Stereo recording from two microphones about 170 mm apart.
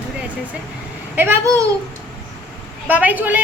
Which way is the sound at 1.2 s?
15° right (ahead or behind).